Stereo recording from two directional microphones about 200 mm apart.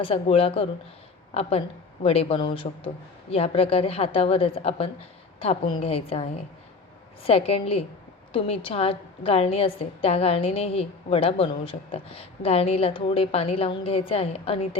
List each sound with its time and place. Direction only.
0.0 s a woman's voice: 30° left (ahead or behind)